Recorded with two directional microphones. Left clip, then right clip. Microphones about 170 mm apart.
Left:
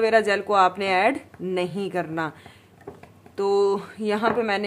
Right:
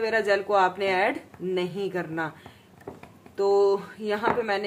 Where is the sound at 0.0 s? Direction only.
40° left (ahead or behind).